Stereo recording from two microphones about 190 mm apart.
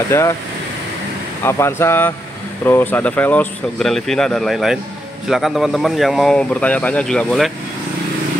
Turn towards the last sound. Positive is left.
turn(degrees=5)  # may be behind; listen again after turning